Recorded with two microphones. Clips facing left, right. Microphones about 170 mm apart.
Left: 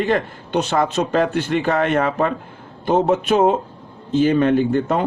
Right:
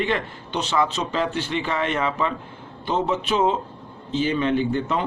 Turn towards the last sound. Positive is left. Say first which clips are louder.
# left 5 dB
turn(degrees=45)  # may be behind; listen again after turning